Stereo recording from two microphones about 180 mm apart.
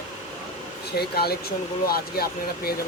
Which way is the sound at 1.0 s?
60° left (ahead or behind).